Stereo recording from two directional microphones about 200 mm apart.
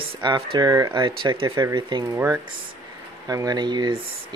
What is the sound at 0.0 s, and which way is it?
Speech, 25° right (ahead or behind).